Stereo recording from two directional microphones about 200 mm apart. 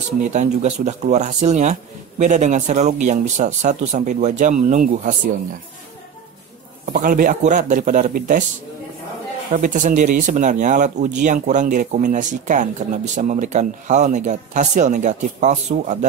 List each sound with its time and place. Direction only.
0.2 s speech: 35° right (ahead or behind)
6.9 s speech: 40° right (ahead or behind)
9.5 s speech: 40° right (ahead or behind)